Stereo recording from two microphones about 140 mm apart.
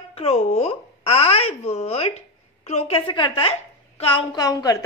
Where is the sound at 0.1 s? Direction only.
45° left (ahead or behind).